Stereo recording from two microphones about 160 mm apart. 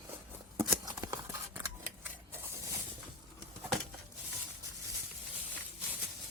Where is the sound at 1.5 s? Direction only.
10° right (ahead or behind).